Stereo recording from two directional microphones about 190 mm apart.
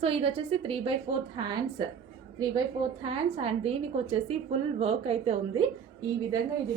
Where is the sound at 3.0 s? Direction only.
30° right (ahead or behind).